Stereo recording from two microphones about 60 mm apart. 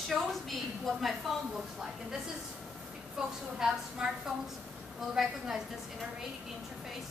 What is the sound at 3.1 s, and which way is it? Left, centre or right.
Speech, centre.